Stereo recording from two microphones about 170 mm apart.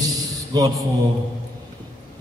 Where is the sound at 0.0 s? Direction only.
25° right (ahead or behind).